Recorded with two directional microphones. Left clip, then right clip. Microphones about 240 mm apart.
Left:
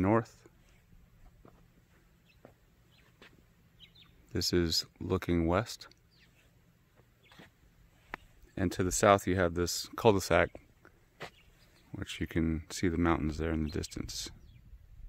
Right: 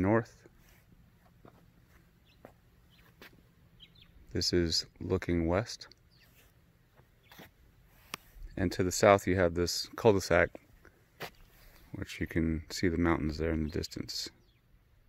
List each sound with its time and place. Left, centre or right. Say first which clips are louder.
0.0 s a sound: even; centre
2.4 s bird: right 3 dB; right
3.2 s duck: right 3 dB; right
4.3 s speech: right 1 dB; centre
7.2 s a sound: right 3 dB; right
8.5 s speech: right 1 dB; centre
11.2 s dog: right 2 dB; right
11.9 s speech: even; centre